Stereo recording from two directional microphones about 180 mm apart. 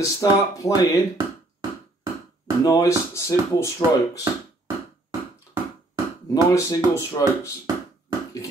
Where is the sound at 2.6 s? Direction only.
15° left (ahead or behind).